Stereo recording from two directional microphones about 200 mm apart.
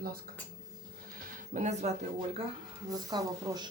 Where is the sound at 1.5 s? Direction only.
35° right (ahead or behind).